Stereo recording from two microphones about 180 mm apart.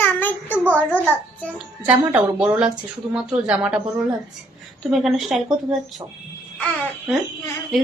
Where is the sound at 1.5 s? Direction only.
5° right (ahead or behind).